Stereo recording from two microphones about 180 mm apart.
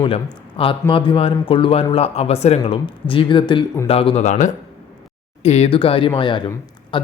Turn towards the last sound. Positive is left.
turn(degrees=30)  # may be behind; listen again after turning